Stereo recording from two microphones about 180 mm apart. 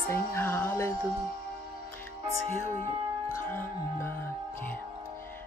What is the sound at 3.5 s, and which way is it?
Music, 10° left (ahead or behind).